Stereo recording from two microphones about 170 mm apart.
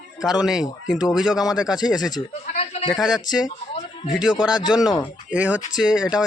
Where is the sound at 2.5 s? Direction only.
40° left (ahead or behind).